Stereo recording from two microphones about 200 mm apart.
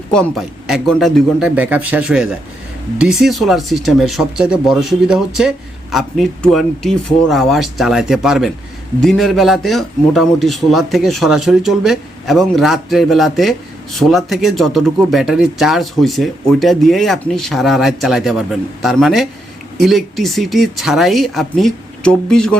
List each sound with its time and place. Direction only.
0.1 s speech: centre (ahead or behind)